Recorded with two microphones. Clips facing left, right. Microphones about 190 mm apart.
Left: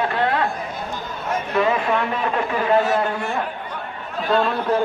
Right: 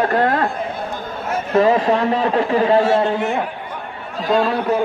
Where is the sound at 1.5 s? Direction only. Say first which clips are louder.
Right 6 dB; 35° right (ahead or behind); by 4.5 s 15° right (ahead or behind).